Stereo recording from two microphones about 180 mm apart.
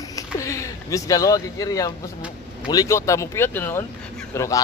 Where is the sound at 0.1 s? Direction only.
15° left (ahead or behind).